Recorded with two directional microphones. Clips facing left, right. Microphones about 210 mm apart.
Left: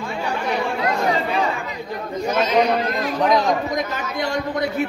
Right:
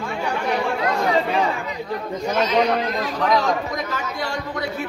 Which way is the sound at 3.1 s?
20° left (ahead or behind).